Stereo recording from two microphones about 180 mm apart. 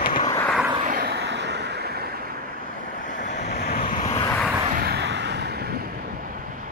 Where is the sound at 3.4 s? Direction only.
60° left (ahead or behind).